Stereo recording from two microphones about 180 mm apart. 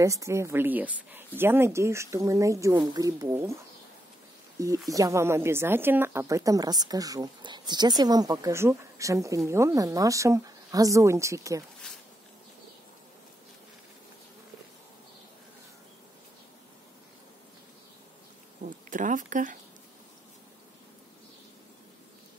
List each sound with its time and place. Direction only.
0.0 s a woman's voice: 15° right (ahead or behind)
4.6 s a woman's voice: 15° right (ahead or behind)
18.7 s a sound: 45° right (ahead or behind)